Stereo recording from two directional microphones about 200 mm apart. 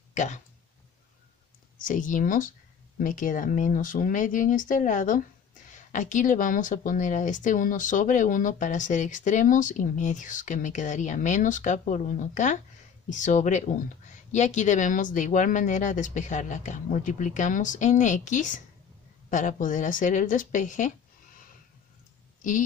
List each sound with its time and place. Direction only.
0.1 s speech: 35° left (ahead or behind)
1.8 s a woman's voice: 40° left (ahead or behind)